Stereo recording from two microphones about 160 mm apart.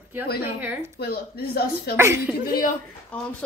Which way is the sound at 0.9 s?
75° left (ahead or behind).